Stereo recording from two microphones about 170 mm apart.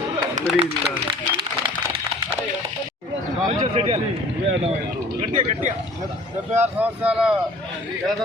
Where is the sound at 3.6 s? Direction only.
35° right (ahead or behind).